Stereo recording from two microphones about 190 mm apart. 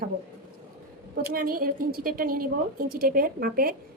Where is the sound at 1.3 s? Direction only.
50° right (ahead or behind).